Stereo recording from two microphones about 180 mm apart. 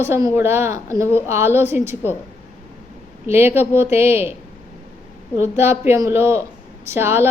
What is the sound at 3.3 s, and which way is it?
A woman's voice, 10° right (ahead or behind).